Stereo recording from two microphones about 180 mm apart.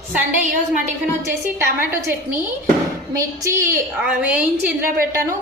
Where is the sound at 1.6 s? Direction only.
15° right (ahead or behind).